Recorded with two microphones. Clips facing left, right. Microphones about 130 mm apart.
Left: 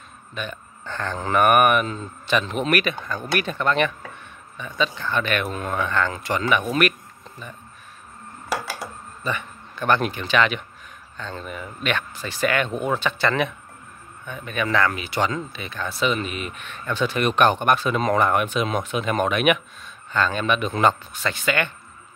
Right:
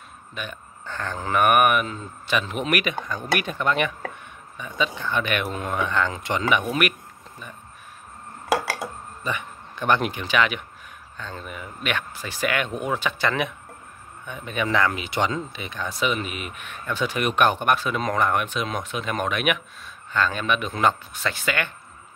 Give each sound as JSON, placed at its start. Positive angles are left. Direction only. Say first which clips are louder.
{"t": 0.3, "sound": "speech", "louder": "left 3 dB", "side_deg": -10}
{"t": 9.2, "sound": "speech", "louder": "left 2 dB", "side_deg": -15}